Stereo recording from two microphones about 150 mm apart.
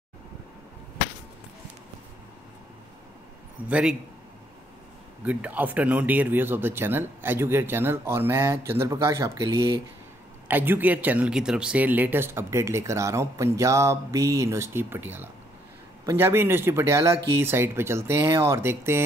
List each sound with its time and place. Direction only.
3.6 s speech: 10° right (ahead or behind)
5.2 s speech: 10° right (ahead or behind)